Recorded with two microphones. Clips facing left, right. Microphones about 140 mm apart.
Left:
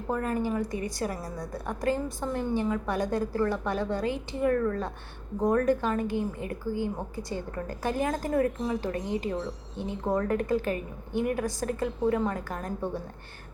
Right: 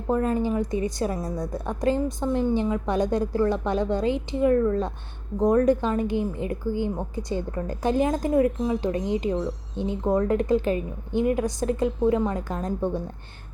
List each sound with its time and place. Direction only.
0.1 s a woman's voice: 20° right (ahead or behind)